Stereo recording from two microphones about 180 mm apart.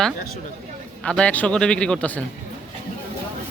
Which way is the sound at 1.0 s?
5° left (ahead or behind).